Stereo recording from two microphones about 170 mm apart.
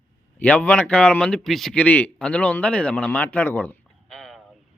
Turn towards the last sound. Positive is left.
turn(degrees=0)  # may be behind; listen again after turning